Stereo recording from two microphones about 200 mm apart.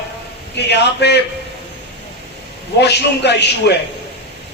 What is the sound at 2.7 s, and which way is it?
A man's voice, 55° left (ahead or behind).